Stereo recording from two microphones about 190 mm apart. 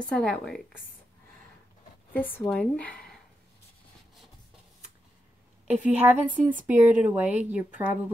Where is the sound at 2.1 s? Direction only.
10° left (ahead or behind).